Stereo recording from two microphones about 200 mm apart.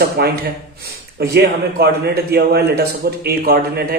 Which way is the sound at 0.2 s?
50° right (ahead or behind).